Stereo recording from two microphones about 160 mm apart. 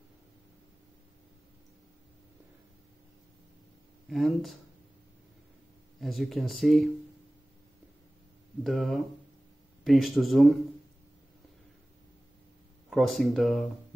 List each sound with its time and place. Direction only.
4.1 s speech: centre (ahead or behind)
5.9 s speech: centre (ahead or behind)
8.6 s speech: centre (ahead or behind)
12.9 s speech: centre (ahead or behind)